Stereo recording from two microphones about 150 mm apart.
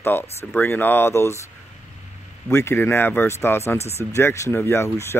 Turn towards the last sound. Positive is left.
turn(degrees=20)  # may be behind; listen again after turning